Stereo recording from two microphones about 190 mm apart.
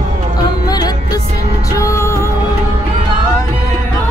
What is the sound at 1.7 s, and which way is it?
Music, 15° left (ahead or behind).